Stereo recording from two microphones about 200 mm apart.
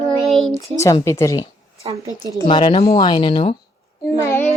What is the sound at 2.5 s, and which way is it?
Speech, 25° left (ahead or behind).